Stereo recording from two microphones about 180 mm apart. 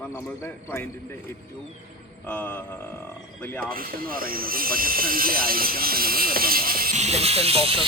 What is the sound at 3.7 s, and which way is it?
Speech, 55° right (ahead or behind).